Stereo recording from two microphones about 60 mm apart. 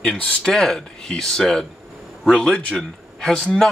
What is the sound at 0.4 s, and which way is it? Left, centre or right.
Speech, centre.